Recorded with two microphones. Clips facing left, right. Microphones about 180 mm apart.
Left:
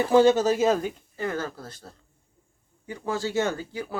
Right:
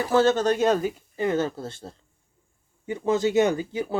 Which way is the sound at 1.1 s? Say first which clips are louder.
Right 7 dB; 20° right (ahead or behind).